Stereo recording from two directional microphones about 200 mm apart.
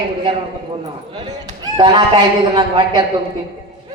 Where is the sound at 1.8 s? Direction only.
25° right (ahead or behind).